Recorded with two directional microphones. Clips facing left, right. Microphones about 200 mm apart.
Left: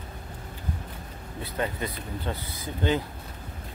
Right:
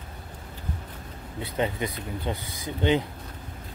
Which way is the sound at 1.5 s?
20° right (ahead or behind).